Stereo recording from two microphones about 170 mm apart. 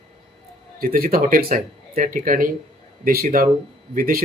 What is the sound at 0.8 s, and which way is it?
Speech, 60° right (ahead or behind).